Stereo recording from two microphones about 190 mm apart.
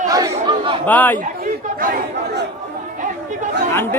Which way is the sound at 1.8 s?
50° right (ahead or behind).